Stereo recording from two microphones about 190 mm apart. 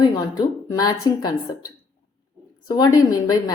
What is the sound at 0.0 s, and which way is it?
Speech, 20° left (ahead or behind).